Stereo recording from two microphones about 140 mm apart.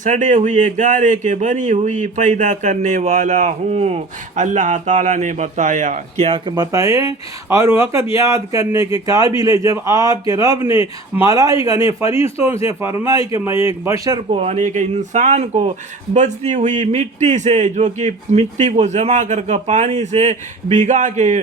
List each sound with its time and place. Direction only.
0.0 s speech: 60° right (ahead or behind)
6.2 s speech: 40° right (ahead or behind)
6.5 s a man's voice: 25° right (ahead or behind)
14.3 s speech: 55° right (ahead or behind)